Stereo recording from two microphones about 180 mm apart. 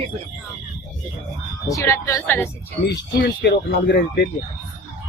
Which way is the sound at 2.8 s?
75° left (ahead or behind).